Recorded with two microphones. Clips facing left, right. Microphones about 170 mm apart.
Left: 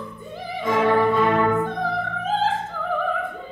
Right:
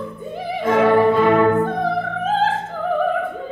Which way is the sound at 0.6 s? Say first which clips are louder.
Right 4 dB; 60° right (ahead or behind).